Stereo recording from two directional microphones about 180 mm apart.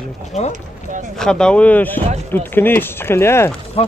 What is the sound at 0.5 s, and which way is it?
Speech, 45° right (ahead or behind).